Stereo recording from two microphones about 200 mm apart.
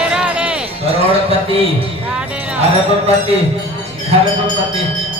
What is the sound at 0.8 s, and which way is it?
A man's voice, 30° right (ahead or behind).